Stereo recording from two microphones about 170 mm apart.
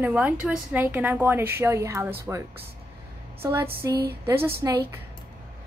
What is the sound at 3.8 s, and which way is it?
Speech, 20° right (ahead or behind).